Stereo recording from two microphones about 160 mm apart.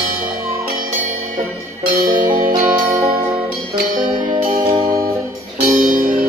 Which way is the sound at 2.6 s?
10° right (ahead or behind).